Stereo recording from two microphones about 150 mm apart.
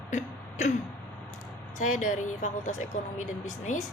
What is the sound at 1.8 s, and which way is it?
Speech, 60° left (ahead or behind).